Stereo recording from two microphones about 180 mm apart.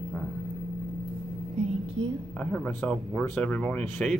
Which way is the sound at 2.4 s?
5° left (ahead or behind).